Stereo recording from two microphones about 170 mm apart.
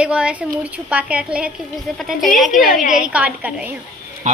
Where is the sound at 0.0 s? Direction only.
5° right (ahead or behind).